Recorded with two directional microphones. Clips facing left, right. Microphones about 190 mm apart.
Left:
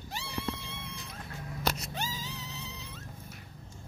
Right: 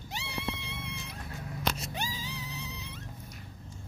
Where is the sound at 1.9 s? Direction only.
15° right (ahead or behind).